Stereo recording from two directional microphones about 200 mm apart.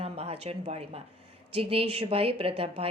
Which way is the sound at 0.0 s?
30° right (ahead or behind).